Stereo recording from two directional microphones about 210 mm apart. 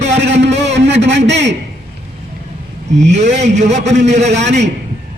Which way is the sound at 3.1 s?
35° right (ahead or behind).